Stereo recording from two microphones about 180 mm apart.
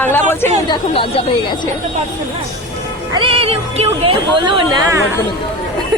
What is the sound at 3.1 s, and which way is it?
Speech, 30° right (ahead or behind).